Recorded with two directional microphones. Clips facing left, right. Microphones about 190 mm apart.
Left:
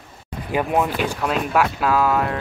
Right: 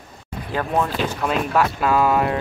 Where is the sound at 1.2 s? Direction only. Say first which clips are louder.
Right 1 dB; centre (ahead or behind).